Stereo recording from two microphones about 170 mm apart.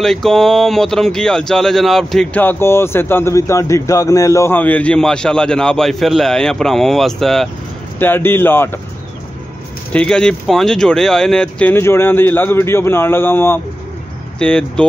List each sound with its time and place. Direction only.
0.0 s speech: centre (ahead or behind)
8.0 s speech: 10° left (ahead or behind)
9.9 s speech: 5° left (ahead or behind)